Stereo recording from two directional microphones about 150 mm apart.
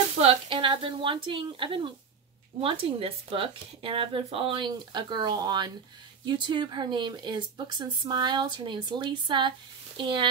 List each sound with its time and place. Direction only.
0.2 s speech: 40° right (ahead or behind)